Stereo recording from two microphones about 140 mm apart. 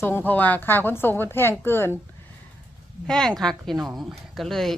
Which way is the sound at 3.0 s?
5° left (ahead or behind).